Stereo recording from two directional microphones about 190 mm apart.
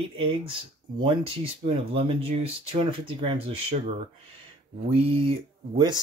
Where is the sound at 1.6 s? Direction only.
30° right (ahead or behind).